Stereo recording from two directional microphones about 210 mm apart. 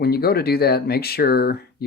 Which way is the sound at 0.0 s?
50° left (ahead or behind).